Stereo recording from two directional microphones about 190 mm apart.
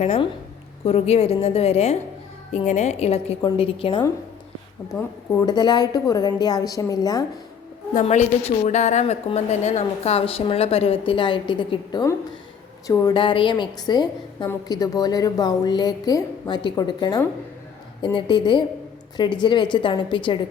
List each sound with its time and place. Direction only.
0.0 s a woman's voice: 35° left (ahead or behind)
4.9 s a woman's voice: 20° left (ahead or behind)
7.9 s a woman's voice: 40° left (ahead or behind)